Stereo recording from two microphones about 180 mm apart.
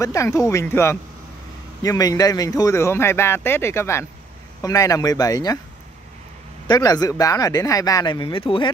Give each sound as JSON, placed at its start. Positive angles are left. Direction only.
{"t": 0.0, "sound": "a man's voice", "side_deg": 15}
{"t": 6.7, "sound": "speech", "side_deg": 20}